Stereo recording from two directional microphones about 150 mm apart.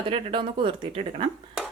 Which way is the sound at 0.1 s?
35° right (ahead or behind).